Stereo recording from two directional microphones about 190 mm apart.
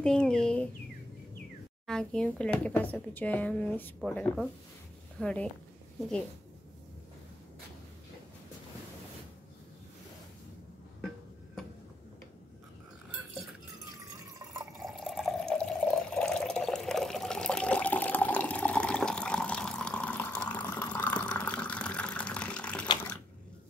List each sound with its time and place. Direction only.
0.0 s speech: 5° left (ahead or behind)
1.9 s speech: 5° left (ahead or behind)
14.8 s water: centre (ahead or behind)
20.4 s a sound: 10° left (ahead or behind)